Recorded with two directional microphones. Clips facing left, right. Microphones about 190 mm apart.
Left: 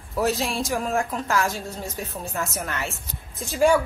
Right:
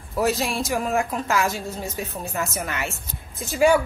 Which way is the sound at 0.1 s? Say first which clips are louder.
Right 1 dB; centre (ahead or behind).